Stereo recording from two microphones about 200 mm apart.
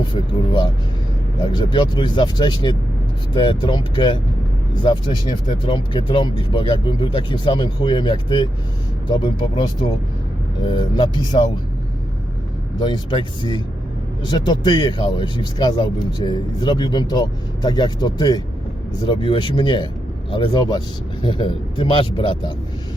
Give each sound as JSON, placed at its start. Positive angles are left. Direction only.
{"t": 0.1, "sound": "speech", "side_deg": 25}
{"t": 10.7, "sound": "speech", "side_deg": 20}
{"t": 12.8, "sound": "speech", "side_deg": 25}